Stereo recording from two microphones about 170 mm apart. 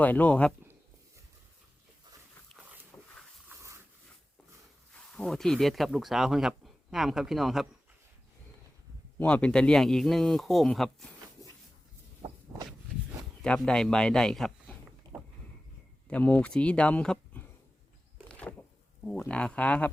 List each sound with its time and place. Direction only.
0.0 s speech: 10° left (ahead or behind)
2.9 s a sound: 20° left (ahead or behind)
3.5 s dog: 15° right (ahead or behind)
4.9 s a man's voice: 5° left (ahead or behind)
9.1 s a man's voice: 5° left (ahead or behind)
13.4 s a man's voice: 5° left (ahead or behind)
16.0 s speech: 10° left (ahead or behind)
18.3 s a sound: 10° left (ahead or behind)
19.0 s speech: 10° left (ahead or behind)